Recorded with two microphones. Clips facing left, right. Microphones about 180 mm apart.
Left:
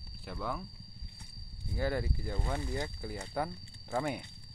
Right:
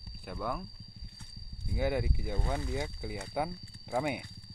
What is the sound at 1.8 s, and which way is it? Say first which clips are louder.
Speech: right 2 dB; 15° right (ahead or behind).